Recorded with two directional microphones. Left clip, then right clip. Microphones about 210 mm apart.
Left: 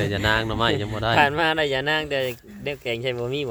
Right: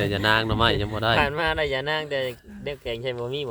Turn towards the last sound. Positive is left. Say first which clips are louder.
# left 3 dB
turn(degrees=40)  # may be behind; listen again after turning